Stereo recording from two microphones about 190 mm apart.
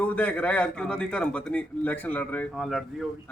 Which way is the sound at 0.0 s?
10° left (ahead or behind).